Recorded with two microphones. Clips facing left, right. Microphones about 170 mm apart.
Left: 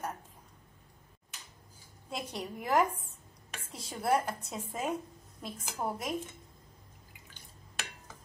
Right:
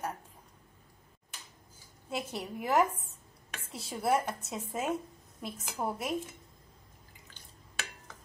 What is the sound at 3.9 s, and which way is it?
A woman's voice, 5° right (ahead or behind).